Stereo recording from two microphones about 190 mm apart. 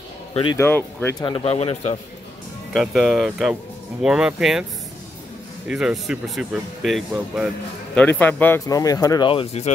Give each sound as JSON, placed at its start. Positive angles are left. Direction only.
{"t": 0.3, "sound": "speech", "side_deg": 30}
{"t": 0.6, "sound": "speech", "side_deg": 10}
{"t": 1.2, "sound": "speech", "side_deg": 30}
{"t": 2.7, "sound": "speech", "side_deg": 0}
{"t": 5.7, "sound": "speech", "side_deg": -5}